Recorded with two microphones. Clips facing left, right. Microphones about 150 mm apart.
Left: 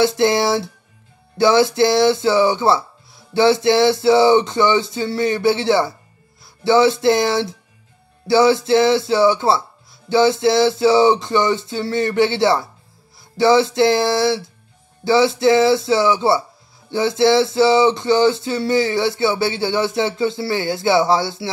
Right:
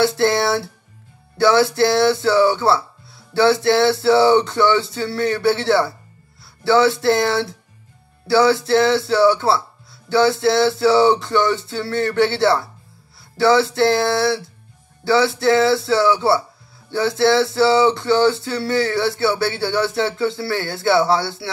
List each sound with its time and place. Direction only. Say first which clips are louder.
0.0 s speech: left 1 dB; 20° left (ahead or behind)